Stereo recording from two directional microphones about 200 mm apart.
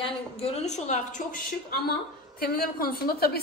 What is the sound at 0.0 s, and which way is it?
A woman's voice, 30° left (ahead or behind).